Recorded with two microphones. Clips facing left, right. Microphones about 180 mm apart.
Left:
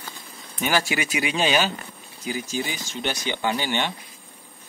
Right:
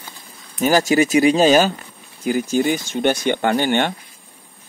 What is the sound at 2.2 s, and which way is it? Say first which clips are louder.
Speech: right 10 dB; 55° right (ahead or behind).